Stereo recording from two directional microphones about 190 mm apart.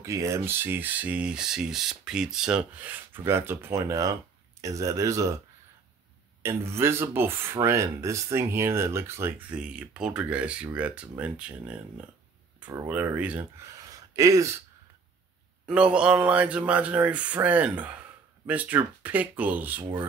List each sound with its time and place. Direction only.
0.0 s speech: 15° right (ahead or behind)
6.4 s speech: 15° right (ahead or behind)
15.6 s speech: 5° right (ahead or behind)